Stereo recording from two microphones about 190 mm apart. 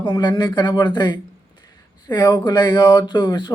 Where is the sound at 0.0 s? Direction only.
25° left (ahead or behind).